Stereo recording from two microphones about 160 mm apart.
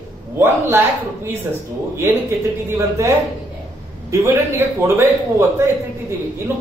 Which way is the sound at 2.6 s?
15° right (ahead or behind).